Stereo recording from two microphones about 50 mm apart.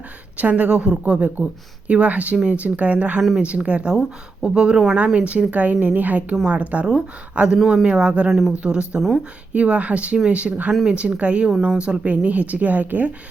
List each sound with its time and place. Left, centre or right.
0.3 s a woman's voice: right
4.9 s a woman's voice: right
8.3 s speech: centre
8.9 s speech: centre
9.5 s a woman's voice: right